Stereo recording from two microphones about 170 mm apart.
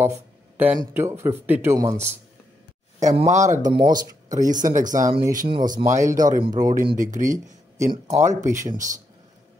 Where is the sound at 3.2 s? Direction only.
45° right (ahead or behind).